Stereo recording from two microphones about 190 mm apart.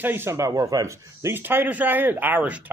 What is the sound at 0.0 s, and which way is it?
A man's voice, 10° right (ahead or behind).